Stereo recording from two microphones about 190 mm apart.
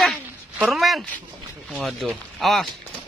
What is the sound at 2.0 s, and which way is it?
Speech, centre (ahead or behind).